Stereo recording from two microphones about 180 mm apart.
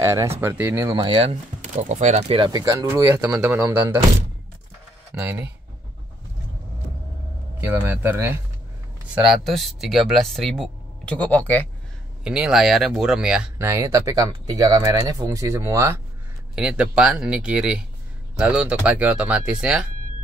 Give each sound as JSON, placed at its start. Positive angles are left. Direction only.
{"t": 0.0, "sound": "speech", "side_deg": -15}
{"t": 0.9, "sound": "speech", "side_deg": -30}
{"t": 1.6, "sound": "speech", "side_deg": -40}
{"t": 5.1, "sound": "speech", "side_deg": -10}
{"t": 7.6, "sound": "speech", "side_deg": -10}
{"t": 9.1, "sound": "speech", "side_deg": 0}
{"t": 12.2, "sound": "speech", "side_deg": -5}
{"t": 16.5, "sound": "speech", "side_deg": -5}